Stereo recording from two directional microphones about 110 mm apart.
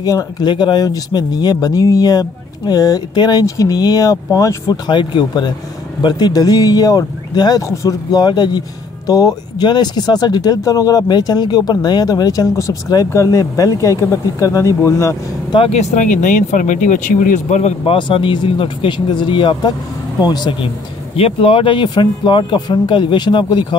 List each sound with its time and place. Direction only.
0.0 s speech: 35° left (ahead or behind)
15.7 s speech: 90° left
17.9 s speech: 50° left (ahead or behind)
21.2 s speech: 55° left (ahead or behind)